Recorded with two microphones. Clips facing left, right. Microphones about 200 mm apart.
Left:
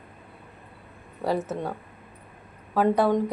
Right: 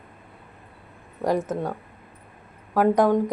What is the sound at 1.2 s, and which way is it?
Speech, 15° right (ahead or behind).